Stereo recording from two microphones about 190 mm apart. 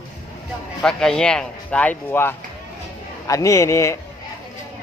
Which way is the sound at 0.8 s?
5° left (ahead or behind).